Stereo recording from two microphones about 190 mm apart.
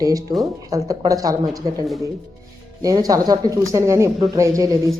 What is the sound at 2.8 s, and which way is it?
A woman's voice, 20° right (ahead or behind).